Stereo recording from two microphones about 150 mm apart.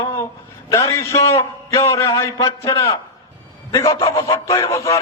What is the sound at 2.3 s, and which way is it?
A man's voice, 30° left (ahead or behind).